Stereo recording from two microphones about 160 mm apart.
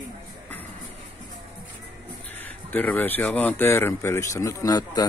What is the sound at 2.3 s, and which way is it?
Speech, 10° left (ahead or behind).